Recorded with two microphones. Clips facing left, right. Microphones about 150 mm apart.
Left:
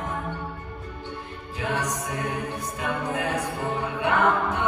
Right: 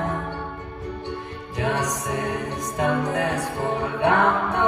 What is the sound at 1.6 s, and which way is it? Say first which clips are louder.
Music: right 3 dB; 70° right (ahead or behind).